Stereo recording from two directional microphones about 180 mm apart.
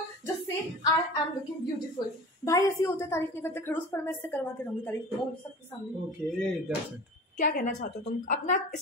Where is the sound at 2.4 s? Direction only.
15° left (ahead or behind).